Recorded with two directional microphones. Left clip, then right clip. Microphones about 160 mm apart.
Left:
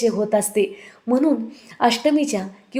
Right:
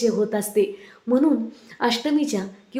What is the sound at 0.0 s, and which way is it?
A woman's voice, 25° left (ahead or behind).